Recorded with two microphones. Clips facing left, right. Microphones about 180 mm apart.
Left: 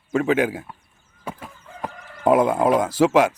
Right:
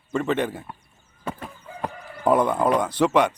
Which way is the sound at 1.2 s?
10° left (ahead or behind).